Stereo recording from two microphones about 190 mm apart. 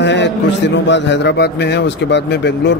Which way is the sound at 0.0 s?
70° left (ahead or behind).